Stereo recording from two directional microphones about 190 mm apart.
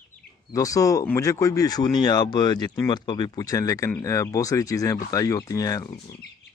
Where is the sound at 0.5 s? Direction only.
20° left (ahead or behind).